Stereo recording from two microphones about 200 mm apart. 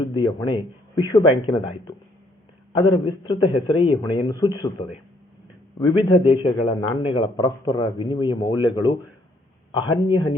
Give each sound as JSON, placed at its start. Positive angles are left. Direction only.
{"t": 0.0, "sound": "a man's voice", "side_deg": 20}
{"t": 2.7, "sound": "a man's voice", "side_deg": 25}